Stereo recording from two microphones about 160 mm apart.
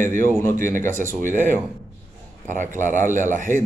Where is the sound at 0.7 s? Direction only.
55° right (ahead or behind).